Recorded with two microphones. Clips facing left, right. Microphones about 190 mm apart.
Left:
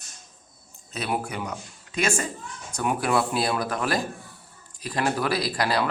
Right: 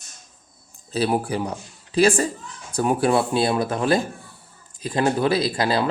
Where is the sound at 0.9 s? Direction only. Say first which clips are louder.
Right 7 dB; 35° right (ahead or behind).